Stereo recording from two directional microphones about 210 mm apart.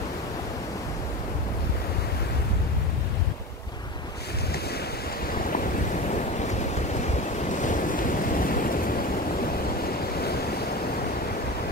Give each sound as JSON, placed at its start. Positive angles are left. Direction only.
{"t": 5.5, "sound": "waves", "side_deg": 40}